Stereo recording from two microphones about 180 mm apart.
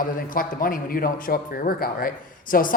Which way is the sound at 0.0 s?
50° left (ahead or behind).